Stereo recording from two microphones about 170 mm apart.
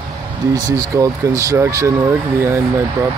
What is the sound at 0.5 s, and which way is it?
Speech, 20° right (ahead or behind).